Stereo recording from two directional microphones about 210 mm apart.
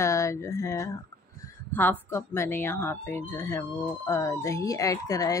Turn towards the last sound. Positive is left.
turn(degrees=15)  # may be behind; listen again after turning